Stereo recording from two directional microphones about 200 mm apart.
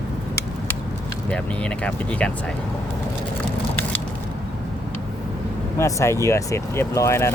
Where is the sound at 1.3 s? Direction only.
5° left (ahead or behind).